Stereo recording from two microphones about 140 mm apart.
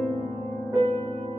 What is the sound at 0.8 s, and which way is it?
Music, 40° right (ahead or behind).